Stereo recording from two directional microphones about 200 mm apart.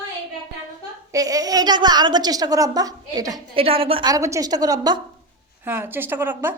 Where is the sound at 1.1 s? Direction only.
15° right (ahead or behind).